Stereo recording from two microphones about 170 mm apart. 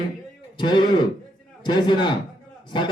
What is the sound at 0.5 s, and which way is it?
A man's voice, 25° left (ahead or behind).